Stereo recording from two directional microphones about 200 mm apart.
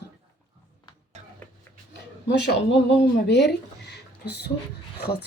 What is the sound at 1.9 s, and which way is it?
Speech, 60° left (ahead or behind).